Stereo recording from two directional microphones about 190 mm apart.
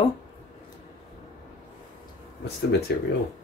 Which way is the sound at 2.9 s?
60° left (ahead or behind).